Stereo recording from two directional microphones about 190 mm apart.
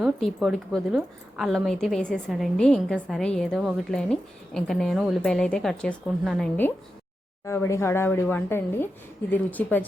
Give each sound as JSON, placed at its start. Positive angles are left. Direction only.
{"t": 0.0, "sound": "speech", "side_deg": 0}
{"t": 7.4, "sound": "speech", "side_deg": 15}